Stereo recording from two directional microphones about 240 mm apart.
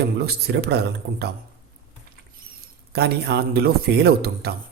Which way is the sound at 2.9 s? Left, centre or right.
Right.